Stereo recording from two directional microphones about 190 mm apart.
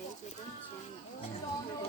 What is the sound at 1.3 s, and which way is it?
Speech, 30° left (ahead or behind).